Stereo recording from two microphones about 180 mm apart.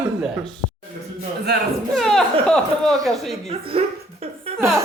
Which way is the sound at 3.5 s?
30° right (ahead or behind).